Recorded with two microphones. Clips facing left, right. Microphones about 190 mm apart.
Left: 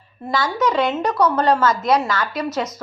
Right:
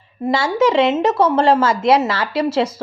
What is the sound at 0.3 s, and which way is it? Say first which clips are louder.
A woman's voice: right 5 dB; 25° right (ahead or behind).